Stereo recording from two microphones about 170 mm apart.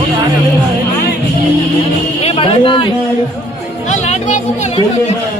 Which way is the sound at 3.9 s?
45° left (ahead or behind).